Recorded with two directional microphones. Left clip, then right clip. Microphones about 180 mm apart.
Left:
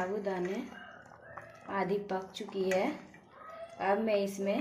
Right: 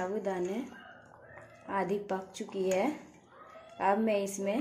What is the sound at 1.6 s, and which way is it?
Speech, 10° right (ahead or behind).